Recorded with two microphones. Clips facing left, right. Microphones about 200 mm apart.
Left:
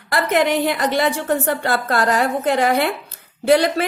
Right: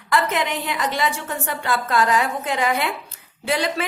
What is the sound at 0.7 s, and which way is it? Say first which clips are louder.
Speech: left 5 dB; 35° left (ahead or behind).